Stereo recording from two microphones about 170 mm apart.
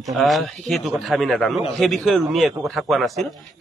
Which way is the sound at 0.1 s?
Centre (ahead or behind).